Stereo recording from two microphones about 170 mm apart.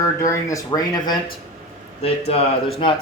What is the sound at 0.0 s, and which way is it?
Speech, 20° left (ahead or behind).